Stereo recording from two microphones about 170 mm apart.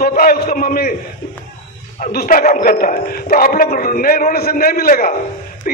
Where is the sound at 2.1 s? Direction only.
60° left (ahead or behind).